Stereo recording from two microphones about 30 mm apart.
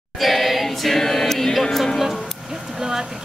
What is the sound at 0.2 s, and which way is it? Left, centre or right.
Choir, centre.